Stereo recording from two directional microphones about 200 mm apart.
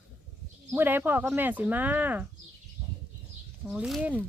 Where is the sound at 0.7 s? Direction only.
10° right (ahead or behind).